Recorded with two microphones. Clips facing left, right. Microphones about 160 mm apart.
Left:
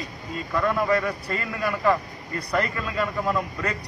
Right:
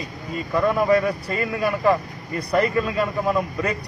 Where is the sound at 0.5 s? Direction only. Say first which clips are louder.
Right 4 dB; 20° right (ahead or behind).